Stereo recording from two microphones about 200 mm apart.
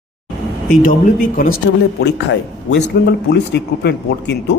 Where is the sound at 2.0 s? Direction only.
55° left (ahead or behind).